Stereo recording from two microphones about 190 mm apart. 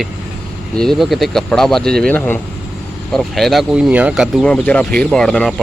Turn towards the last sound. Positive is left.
turn(degrees=0)  # may be behind; listen again after turning